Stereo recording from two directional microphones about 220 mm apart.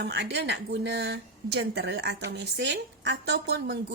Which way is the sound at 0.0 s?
50° right (ahead or behind).